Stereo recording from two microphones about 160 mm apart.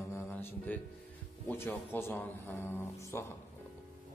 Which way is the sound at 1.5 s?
10° left (ahead or behind).